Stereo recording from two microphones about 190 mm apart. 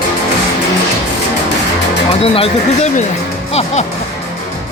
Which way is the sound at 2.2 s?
30° left (ahead or behind).